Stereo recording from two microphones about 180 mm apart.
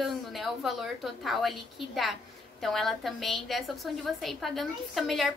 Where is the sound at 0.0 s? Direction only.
Centre (ahead or behind).